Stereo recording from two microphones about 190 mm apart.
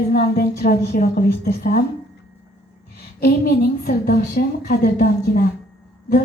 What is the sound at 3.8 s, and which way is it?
Speech, 55° left (ahead or behind).